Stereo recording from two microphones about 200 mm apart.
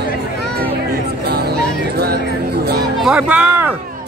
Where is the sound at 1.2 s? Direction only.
50° right (ahead or behind).